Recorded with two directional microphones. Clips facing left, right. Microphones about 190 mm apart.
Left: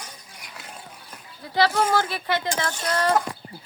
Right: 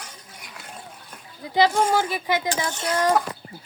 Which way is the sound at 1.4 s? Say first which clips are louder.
Right 2 dB; 15° right (ahead or behind).